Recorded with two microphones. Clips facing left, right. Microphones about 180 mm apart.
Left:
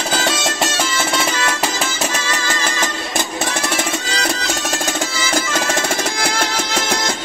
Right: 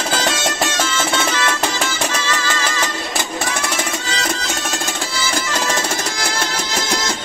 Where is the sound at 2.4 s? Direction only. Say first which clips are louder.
Even; 20° left (ahead or behind).